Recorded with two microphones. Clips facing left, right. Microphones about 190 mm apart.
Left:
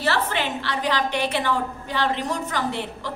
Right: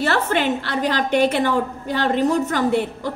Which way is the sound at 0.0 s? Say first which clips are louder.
Right 4 dB; 50° right (ahead or behind).